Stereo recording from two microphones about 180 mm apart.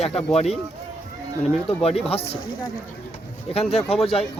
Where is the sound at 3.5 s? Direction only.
35° left (ahead or behind).